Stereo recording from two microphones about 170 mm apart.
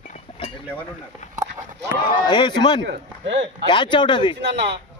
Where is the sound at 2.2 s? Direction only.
25° left (ahead or behind).